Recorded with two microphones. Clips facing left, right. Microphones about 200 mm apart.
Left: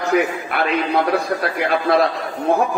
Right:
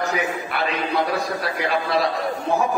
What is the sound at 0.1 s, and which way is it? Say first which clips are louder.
A man's voice: left 6 dB; 55° left (ahead or behind).